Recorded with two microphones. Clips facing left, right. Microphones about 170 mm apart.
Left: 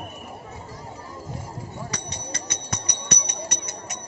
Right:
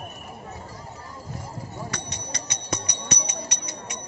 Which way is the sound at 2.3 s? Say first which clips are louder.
Right 3 dB; 55° left (ahead or behind).